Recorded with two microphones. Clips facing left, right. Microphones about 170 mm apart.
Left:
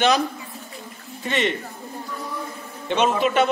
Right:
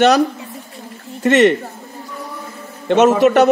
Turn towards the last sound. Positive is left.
turn(degrees=-80)